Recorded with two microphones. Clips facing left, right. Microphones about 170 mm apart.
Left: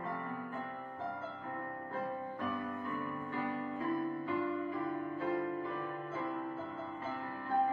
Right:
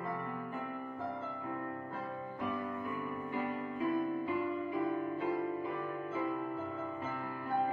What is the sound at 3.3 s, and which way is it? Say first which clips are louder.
Music: right 1 dB; 15° right (ahead or behind).